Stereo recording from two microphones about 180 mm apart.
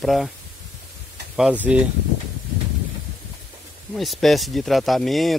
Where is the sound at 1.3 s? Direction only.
5° right (ahead or behind).